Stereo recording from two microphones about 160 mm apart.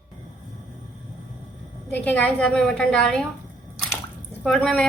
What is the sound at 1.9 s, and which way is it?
A woman's voice, 10° left (ahead or behind).